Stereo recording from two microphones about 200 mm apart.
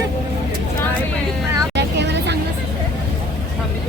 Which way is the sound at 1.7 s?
60° right (ahead or behind).